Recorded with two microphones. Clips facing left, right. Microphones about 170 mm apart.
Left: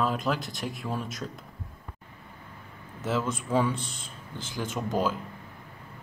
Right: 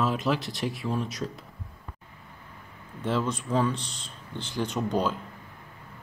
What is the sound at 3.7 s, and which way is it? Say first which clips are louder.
Speech: left 1 dB; 50° left (ahead or behind).